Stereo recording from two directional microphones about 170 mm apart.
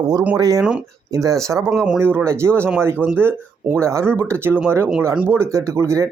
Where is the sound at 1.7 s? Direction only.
Centre (ahead or behind).